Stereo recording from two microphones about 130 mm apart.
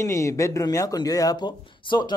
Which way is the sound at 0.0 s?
25° left (ahead or behind).